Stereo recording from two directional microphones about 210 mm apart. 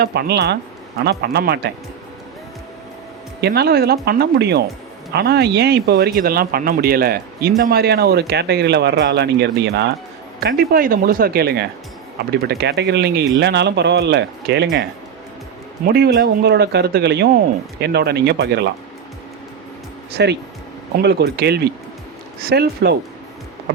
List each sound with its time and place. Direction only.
0.0 s speech: 50° right (ahead or behind)
3.4 s speech: 50° right (ahead or behind)
15.9 s speech: 50° right (ahead or behind)
20.1 s speech: 55° right (ahead or behind)